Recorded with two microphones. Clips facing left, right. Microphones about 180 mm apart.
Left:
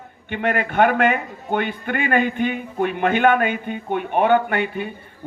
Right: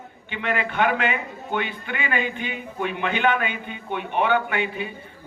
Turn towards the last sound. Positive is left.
turn(degrees=50)  # may be behind; listen again after turning